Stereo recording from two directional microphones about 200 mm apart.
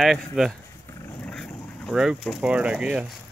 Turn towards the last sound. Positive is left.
turn(degrees=-5)  # may be behind; listen again after turning